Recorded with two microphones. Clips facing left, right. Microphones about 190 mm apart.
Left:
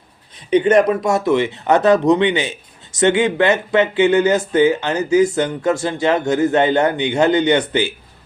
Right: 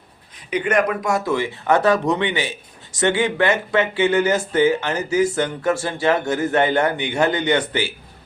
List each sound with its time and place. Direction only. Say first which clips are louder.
0.5 s speech: left 7 dB; 30° left (ahead or behind)